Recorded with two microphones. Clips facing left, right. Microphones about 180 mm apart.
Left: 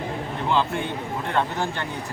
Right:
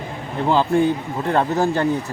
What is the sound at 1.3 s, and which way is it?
Speech, 40° right (ahead or behind).